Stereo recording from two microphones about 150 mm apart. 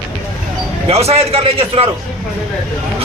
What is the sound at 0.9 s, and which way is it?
Speech, 40° right (ahead or behind).